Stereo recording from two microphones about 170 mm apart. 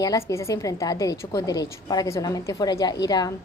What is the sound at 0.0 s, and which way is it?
A woman's voice, 20° left (ahead or behind).